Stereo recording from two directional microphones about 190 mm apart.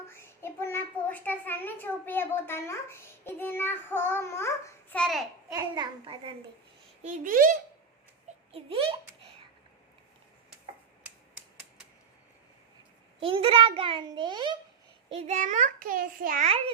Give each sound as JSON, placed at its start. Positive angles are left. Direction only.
{"t": 0.1, "sound": "child singing", "side_deg": 15}
{"t": 5.5, "sound": "a child's voice", "side_deg": -20}
{"t": 7.0, "sound": "speech", "side_deg": -45}
{"t": 8.5, "sound": "a child's voice", "side_deg": -30}
{"t": 13.1, "sound": "a child's voice", "side_deg": -30}
{"t": 15.1, "sound": "a child's voice", "side_deg": -35}